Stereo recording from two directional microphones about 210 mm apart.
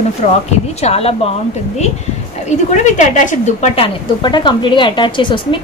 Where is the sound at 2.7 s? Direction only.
35° left (ahead or behind).